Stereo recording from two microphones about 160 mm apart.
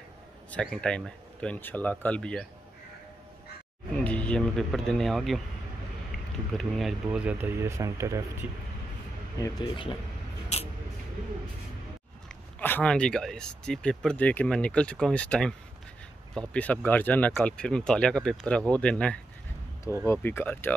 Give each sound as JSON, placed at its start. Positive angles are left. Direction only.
{"t": 0.5, "sound": "speech", "side_deg": 5}
{"t": 3.9, "sound": "speech", "side_deg": 10}
{"t": 7.1, "sound": "speech", "side_deg": -10}
{"t": 9.4, "sound": "speech", "side_deg": 30}
{"t": 10.5, "sound": "a sound", "side_deg": 45}
{"t": 12.5, "sound": "speech", "side_deg": 10}